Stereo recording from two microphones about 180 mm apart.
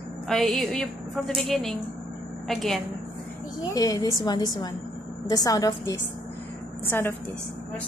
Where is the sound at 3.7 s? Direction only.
20° left (ahead or behind).